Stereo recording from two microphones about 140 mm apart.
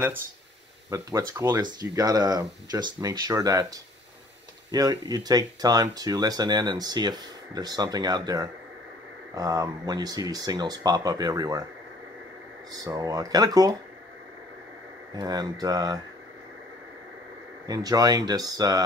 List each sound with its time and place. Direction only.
0.8 s speech: 25° right (ahead or behind)
12.7 s speech: 25° right (ahead or behind)
15.1 s speech: 30° right (ahead or behind)
17.6 s speech: 25° right (ahead or behind)